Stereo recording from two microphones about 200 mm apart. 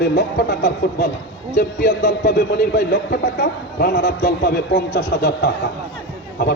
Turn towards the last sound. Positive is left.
turn(degrees=55)  # may be behind; listen again after turning